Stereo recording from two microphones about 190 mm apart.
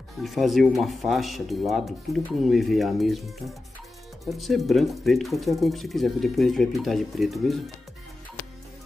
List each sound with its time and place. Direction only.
0.2 s speech: centre (ahead or behind)